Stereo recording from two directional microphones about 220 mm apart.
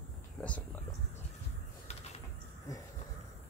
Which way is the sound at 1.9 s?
30° left (ahead or behind).